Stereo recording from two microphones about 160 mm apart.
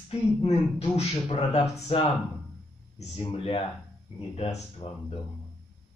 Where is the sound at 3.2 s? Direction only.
35° left (ahead or behind).